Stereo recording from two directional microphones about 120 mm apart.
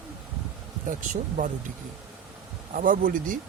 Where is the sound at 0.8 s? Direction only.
90° right.